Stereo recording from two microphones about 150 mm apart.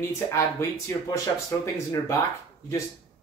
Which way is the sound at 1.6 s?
20° left (ahead or behind).